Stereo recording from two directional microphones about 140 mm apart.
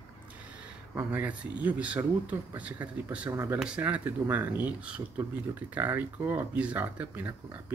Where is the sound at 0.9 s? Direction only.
10° right (ahead or behind).